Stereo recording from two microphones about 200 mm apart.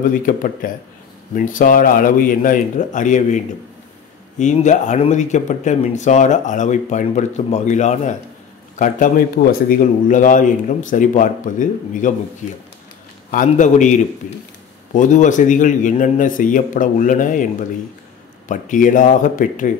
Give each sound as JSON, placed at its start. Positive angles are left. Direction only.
{"t": 0.0, "sound": "a man's voice", "side_deg": 40}
{"t": 13.3, "sound": "speech", "side_deg": 40}
{"t": 15.0, "sound": "speech", "side_deg": 40}